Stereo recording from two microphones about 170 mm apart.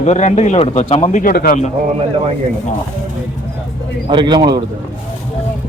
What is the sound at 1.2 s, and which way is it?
Speech, 60° left (ahead or behind).